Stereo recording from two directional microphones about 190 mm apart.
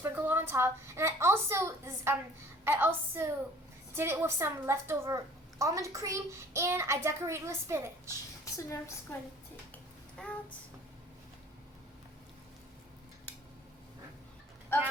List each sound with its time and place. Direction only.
0.0 s a woman's voice: 10° right (ahead or behind)
8.5 s a woman's voice: 15° left (ahead or behind)
9.7 s a sound: 5° left (ahead or behind)
14.7 s a woman's voice: 10° left (ahead or behind)